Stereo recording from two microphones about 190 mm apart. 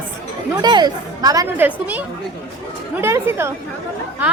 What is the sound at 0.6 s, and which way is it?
A woman's voice, 20° right (ahead or behind).